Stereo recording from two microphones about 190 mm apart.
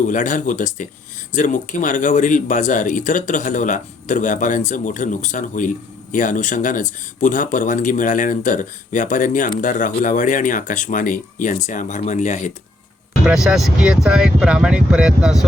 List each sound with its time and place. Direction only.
0.0 s speech: 40° left (ahead or behind)
13.2 s speech: 5° right (ahead or behind)